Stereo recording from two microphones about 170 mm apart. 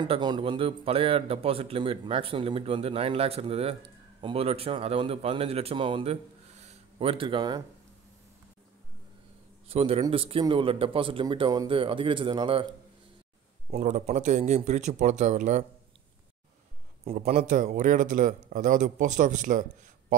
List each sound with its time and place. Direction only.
0.0 s a man's voice: 25° right (ahead or behind)
9.7 s a man's voice: 35° right (ahead or behind)
13.7 s speech: 40° right (ahead or behind)
17.4 s speech: 55° right (ahead or behind)